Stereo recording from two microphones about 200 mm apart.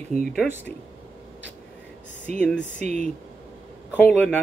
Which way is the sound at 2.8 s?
35° right (ahead or behind).